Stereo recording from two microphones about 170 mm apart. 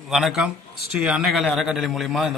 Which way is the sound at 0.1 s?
Centre (ahead or behind).